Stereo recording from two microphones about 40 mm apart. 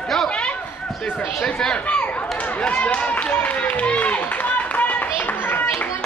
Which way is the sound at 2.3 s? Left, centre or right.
Left.